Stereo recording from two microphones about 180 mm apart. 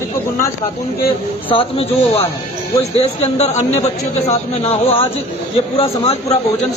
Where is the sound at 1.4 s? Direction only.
30° left (ahead or behind).